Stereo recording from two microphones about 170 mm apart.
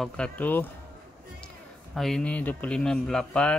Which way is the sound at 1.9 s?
Centre (ahead or behind).